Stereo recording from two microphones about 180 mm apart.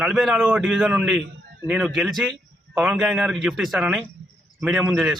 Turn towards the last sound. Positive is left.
turn(degrees=0)  # may be behind; listen again after turning